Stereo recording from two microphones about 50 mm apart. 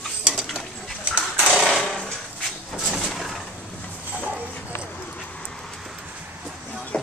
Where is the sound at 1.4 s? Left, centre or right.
Centre.